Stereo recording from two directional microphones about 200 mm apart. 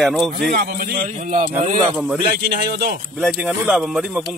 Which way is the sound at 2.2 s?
50° right (ahead or behind).